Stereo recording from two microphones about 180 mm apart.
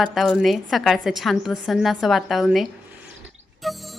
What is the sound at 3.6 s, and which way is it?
Music, centre (ahead or behind).